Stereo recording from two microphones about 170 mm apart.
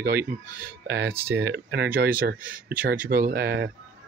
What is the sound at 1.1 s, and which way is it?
Speech, 15° right (ahead or behind).